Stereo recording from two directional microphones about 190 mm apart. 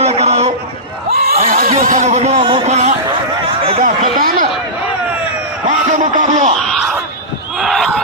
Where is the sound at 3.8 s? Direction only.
45° right (ahead or behind).